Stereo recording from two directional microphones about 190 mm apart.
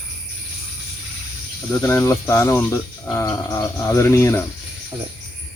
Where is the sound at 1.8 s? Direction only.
15° left (ahead or behind).